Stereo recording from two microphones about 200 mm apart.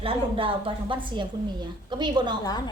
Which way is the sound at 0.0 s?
25° right (ahead or behind).